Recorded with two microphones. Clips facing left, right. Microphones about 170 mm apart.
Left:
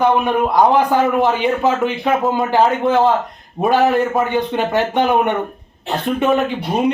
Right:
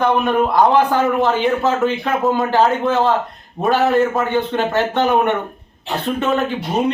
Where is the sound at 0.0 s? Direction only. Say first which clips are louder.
Left 1 dB; 15° left (ahead or behind).